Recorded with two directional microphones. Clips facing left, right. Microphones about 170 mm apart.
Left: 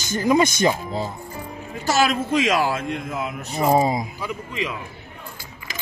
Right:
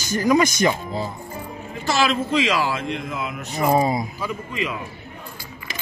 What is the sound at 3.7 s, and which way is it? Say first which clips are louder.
Speech: even; 20° left (ahead or behind).